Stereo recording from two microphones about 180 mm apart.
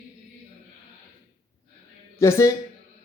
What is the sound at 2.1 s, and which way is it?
Speech, 15° left (ahead or behind).